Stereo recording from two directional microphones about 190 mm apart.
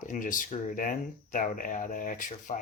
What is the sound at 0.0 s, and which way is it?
Speech, 45° left (ahead or behind).